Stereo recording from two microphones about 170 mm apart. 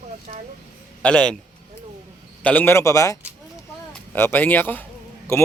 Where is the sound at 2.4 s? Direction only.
10° left (ahead or behind).